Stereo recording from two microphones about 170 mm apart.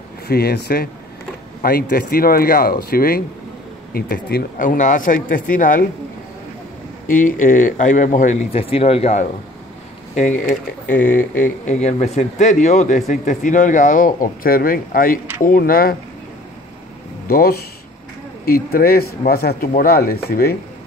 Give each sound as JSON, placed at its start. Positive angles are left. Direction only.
{"t": 0.3, "sound": "speech", "side_deg": 65}
{"t": 7.1, "sound": "speech", "side_deg": 50}
{"t": 17.3, "sound": "speech", "side_deg": 60}